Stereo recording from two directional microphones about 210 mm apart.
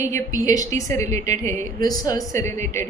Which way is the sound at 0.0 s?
15° left (ahead or behind).